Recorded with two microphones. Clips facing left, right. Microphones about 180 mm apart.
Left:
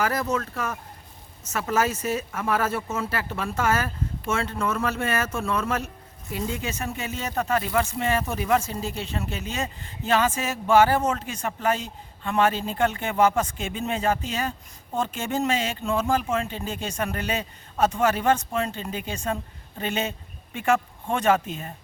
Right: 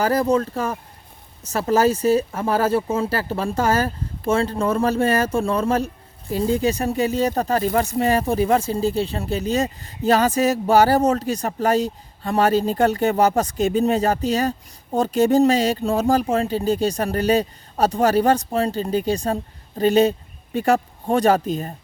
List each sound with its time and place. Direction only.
0.0 s speech: 30° right (ahead or behind)